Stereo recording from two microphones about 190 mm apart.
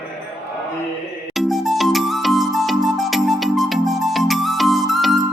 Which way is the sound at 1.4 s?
Centre (ahead or behind).